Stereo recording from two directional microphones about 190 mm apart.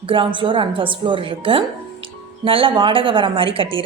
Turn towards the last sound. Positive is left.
turn(degrees=-30)  # may be behind; listen again after turning